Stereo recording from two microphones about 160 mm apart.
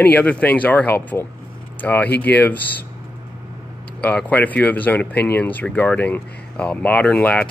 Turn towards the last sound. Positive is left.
turn(degrees=10)  # may be behind; listen again after turning